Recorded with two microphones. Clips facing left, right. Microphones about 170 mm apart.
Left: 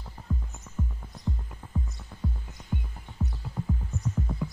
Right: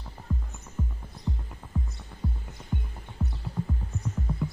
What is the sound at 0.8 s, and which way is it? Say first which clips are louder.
Music: even; centre (ahead or behind).